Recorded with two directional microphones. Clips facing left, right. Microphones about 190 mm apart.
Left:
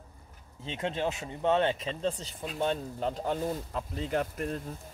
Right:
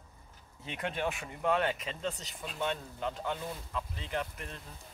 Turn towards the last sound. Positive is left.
turn(degrees=45)  # may be behind; listen again after turning